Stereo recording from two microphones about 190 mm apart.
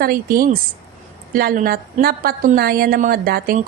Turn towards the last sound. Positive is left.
turn(degrees=-50)  # may be behind; listen again after turning